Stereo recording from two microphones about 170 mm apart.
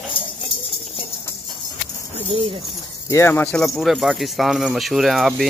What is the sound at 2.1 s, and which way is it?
Speech, 35° right (ahead or behind).